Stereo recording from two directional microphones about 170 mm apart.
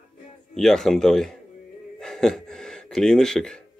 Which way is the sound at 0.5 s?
Centre (ahead or behind).